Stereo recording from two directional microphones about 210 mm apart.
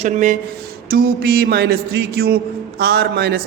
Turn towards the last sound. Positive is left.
turn(degrees=-50)  # may be behind; listen again after turning